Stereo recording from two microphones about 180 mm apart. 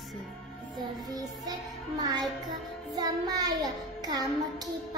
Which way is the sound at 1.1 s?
20° right (ahead or behind).